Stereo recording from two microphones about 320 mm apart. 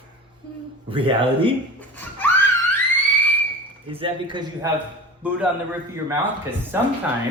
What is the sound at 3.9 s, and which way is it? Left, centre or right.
Speech, centre.